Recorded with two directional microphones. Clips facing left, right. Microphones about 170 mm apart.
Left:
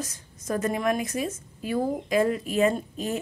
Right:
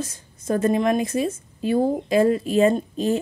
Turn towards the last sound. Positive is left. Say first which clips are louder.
# right 7 dB
turn(degrees=-30)  # may be behind; listen again after turning